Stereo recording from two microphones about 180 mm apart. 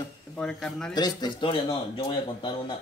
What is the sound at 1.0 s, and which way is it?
Speech, 20° left (ahead or behind).